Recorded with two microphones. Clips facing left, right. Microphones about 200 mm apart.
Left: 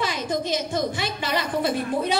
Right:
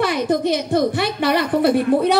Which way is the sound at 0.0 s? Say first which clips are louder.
Right 8 dB; 60° right (ahead or behind).